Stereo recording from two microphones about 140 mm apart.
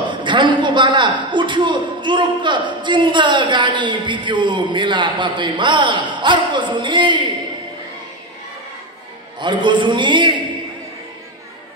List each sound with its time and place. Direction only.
0.1 s a man's voice: 35° right (ahead or behind)
9.4 s a man's voice: 35° right (ahead or behind)